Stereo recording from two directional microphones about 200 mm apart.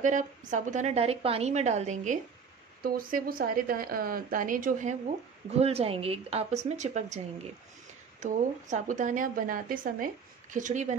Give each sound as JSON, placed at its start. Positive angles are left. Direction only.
{"t": 0.0, "sound": "speech", "side_deg": -40}
{"t": 2.8, "sound": "speech", "side_deg": -45}
{"t": 8.2, "sound": "speech", "side_deg": -40}